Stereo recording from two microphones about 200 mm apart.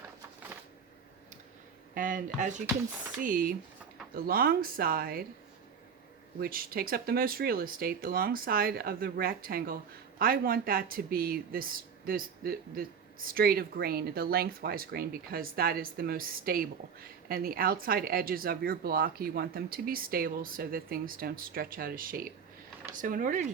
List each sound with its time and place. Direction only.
2.0 s speech: 40° right (ahead or behind)
6.4 s speech: 45° right (ahead or behind)